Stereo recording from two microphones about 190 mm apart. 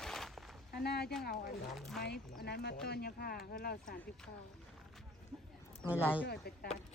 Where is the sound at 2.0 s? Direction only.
55° left (ahead or behind).